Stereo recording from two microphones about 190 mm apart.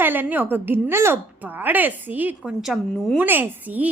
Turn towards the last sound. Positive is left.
turn(degrees=-10)  # may be behind; listen again after turning